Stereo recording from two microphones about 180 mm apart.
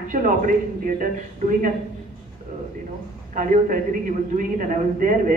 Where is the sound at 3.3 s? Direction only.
45° right (ahead or behind).